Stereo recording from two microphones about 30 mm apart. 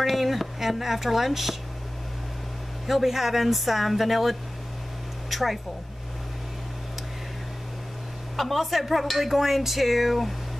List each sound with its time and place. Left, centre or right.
0.0 s speech: centre
2.9 s speech: centre
8.4 s speech: centre